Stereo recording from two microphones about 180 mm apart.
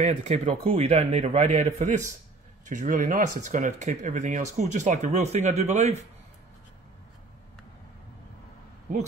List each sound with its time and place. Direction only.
0.0 s speech: 40° right (ahead or behind)